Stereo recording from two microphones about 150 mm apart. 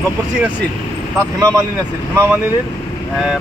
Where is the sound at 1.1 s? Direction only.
25° right (ahead or behind).